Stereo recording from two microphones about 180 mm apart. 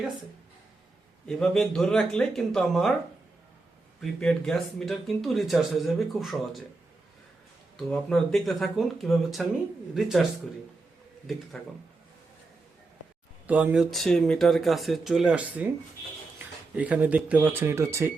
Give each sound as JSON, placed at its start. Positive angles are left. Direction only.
{"t": 1.3, "sound": "speech", "side_deg": 5}
{"t": 4.0, "sound": "speech", "side_deg": 5}
{"t": 7.8, "sound": "speech", "side_deg": 0}
{"t": 11.6, "sound": "speech", "side_deg": 5}
{"t": 13.5, "sound": "speech", "side_deg": -10}
{"t": 16.7, "sound": "speech", "side_deg": -5}